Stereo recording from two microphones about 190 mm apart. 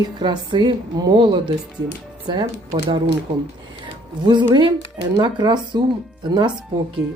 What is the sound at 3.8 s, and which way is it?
Music, 25° right (ahead or behind).